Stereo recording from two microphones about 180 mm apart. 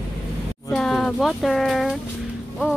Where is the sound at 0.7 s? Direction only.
Centre (ahead or behind).